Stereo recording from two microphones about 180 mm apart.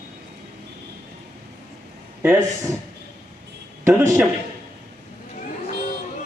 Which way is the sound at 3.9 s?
15° right (ahead or behind).